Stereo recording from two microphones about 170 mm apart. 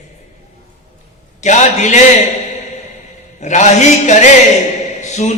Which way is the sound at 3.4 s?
45° left (ahead or behind).